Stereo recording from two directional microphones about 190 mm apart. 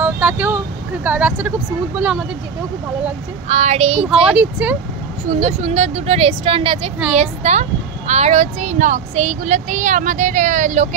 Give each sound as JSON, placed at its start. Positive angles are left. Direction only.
{"t": 0.0, "sound": "vehicle", "side_deg": -10}
{"t": 1.0, "sound": "speech", "side_deg": -10}
{"t": 3.4, "sound": "speech", "side_deg": -35}
{"t": 4.3, "sound": "speech", "side_deg": -10}
{"t": 5.3, "sound": "speech", "side_deg": -35}